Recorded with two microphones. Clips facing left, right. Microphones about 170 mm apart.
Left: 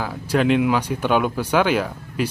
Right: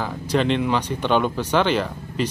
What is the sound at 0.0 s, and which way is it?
Speech, 5° left (ahead or behind).